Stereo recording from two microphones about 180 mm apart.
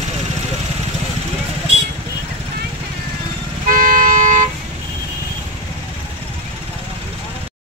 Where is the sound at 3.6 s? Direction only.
50° right (ahead or behind).